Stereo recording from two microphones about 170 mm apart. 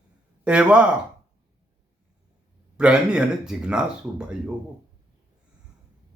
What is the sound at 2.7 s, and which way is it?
Speech, 5° right (ahead or behind).